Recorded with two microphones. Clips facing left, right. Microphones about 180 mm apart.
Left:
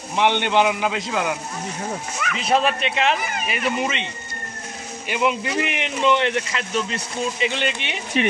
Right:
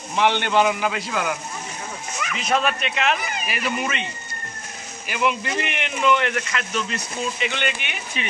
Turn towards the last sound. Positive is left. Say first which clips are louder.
# left 2 dB
turn(degrees=30)  # may be behind; listen again after turning